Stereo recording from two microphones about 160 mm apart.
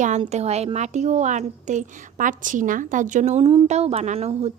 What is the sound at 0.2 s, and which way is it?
A woman's voice, 40° right (ahead or behind).